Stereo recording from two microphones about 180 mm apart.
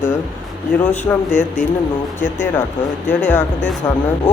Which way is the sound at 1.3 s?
40° left (ahead or behind).